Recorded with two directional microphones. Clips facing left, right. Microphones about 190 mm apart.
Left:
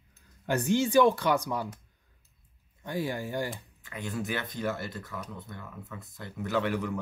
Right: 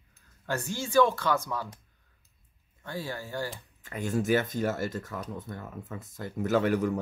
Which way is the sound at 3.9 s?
45° right (ahead or behind).